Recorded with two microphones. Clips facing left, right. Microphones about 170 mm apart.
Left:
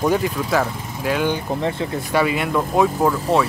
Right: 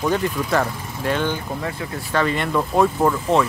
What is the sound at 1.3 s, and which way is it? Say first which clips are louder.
Speech: left 4 dB; 25° left (ahead or behind).